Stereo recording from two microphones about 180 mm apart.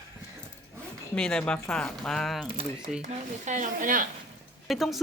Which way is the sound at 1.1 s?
5° left (ahead or behind).